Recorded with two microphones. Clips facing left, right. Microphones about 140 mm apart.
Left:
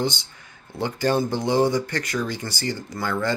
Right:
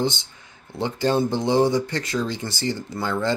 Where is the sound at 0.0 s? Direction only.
25° right (ahead or behind).